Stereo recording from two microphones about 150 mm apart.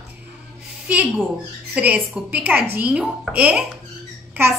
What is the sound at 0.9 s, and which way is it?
A child's voice, 10° right (ahead or behind).